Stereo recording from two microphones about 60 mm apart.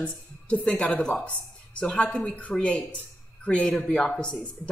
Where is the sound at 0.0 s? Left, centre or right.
Centre.